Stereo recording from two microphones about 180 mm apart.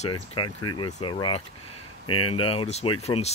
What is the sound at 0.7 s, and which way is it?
Speech, 25° left (ahead or behind).